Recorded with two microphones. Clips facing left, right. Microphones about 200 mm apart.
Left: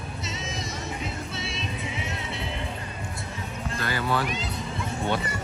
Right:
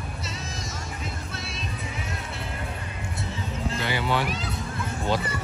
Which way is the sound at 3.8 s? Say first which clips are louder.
Even; 15° right (ahead or behind).